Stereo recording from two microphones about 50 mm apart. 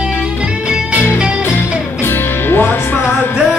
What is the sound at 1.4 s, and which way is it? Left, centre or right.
Music, left.